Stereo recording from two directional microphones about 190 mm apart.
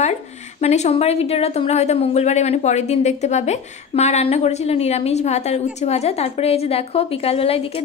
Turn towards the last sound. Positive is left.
turn(degrees=30)  # may be behind; listen again after turning